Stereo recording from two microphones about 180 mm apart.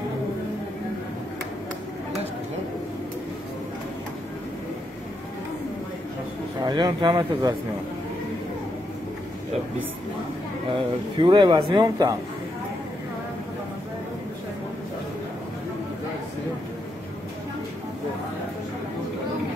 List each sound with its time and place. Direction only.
6.6 s speech: 25° right (ahead or behind)
10.7 s speech: 25° right (ahead or behind)